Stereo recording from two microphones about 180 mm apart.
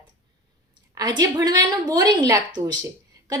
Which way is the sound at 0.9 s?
20° right (ahead or behind).